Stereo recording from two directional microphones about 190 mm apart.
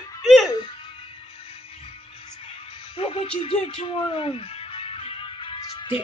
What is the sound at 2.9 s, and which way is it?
Music, 30° left (ahead or behind).